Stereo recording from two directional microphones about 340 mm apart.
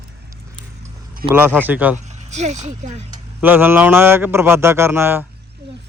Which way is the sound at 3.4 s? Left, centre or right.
Centre.